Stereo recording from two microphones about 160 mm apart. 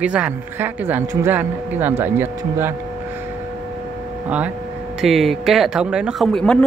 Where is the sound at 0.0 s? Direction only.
5° right (ahead or behind).